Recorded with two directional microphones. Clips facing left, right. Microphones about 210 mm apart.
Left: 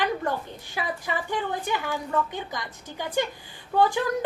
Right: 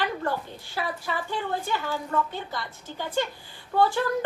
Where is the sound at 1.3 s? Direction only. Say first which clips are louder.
Left 1 dB; 15° left (ahead or behind).